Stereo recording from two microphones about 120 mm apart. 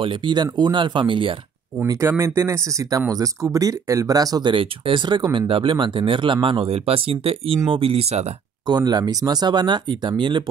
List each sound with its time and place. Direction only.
0.0 s speech: 45° right (ahead or behind)
1.9 s speech: 25° right (ahead or behind); by 8.3 s 60° right (ahead or behind)
8.6 s speech: 35° right (ahead or behind)